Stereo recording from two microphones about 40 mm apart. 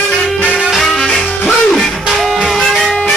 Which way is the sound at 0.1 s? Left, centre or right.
Centre.